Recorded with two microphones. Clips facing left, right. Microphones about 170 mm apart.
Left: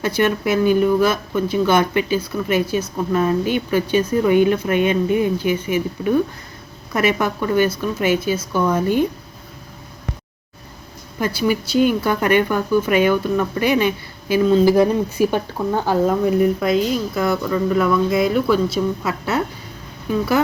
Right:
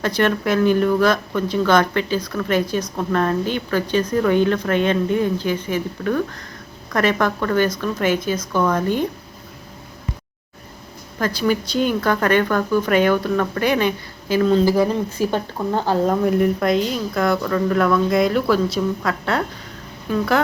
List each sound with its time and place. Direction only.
0.0 s speech: 5° left (ahead or behind)
11.2 s speech: 10° left (ahead or behind)
14.6 s speech: 20° left (ahead or behind)
16.0 s speech: centre (ahead or behind)